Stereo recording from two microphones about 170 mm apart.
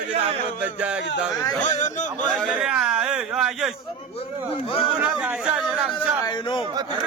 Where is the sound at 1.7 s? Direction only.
45° left (ahead or behind).